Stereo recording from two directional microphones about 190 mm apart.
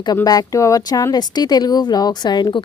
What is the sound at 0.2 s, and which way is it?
Speech, 20° left (ahead or behind).